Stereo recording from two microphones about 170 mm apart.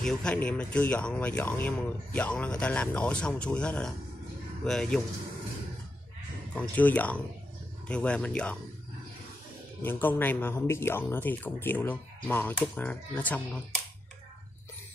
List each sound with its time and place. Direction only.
0.0 s speech: 5° left (ahead or behind)
6.5 s speech: 10° left (ahead or behind)
9.8 s speech: 10° left (ahead or behind)